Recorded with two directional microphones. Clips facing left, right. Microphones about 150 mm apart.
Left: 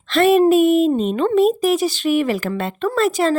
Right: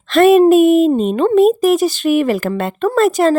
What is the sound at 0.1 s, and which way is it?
Speech, 45° right (ahead or behind).